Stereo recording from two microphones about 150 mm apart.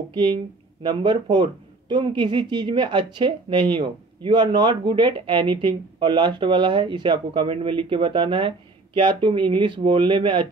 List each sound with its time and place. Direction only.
0.8 s speech: 30° right (ahead or behind)